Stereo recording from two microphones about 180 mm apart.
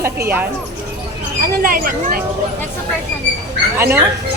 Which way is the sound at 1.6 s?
50° right (ahead or behind).